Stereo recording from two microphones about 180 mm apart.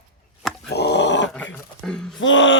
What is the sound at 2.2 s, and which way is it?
Speech, 90° left.